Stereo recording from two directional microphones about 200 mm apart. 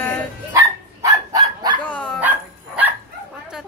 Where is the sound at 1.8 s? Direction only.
5° left (ahead or behind).